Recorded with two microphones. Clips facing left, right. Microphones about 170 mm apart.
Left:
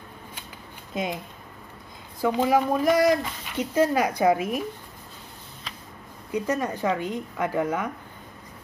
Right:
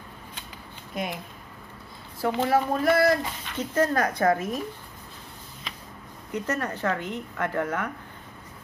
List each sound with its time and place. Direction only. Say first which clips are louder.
0.9 s speech: left 3 dB; 20° left (ahead or behind)
2.2 s speech: left 2 dB; 10° left (ahead or behind)
6.3 s speech: left 3 dB; 10° left (ahead or behind)